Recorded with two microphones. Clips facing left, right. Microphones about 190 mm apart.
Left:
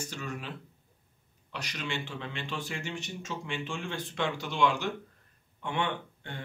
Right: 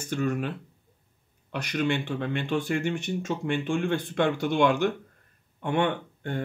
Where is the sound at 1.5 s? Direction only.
55° right (ahead or behind).